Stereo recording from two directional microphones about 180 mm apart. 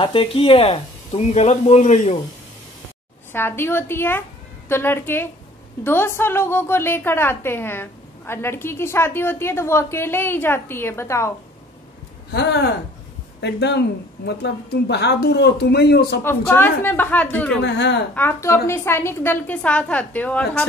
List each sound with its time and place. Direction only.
0.0 s speech: 30° left (ahead or behind)
3.3 s a woman's voice: 15° left (ahead or behind)
12.3 s a woman's voice: 70° left (ahead or behind)
16.3 s a woman's voice: 10° left (ahead or behind)
17.6 s speech: 75° left (ahead or behind)
18.1 s a woman's voice: 15° left (ahead or behind)